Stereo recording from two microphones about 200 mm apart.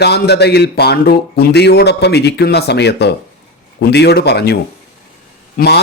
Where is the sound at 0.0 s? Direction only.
55° left (ahead or behind).